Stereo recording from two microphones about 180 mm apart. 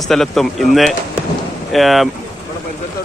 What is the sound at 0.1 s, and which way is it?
Speech, centre (ahead or behind).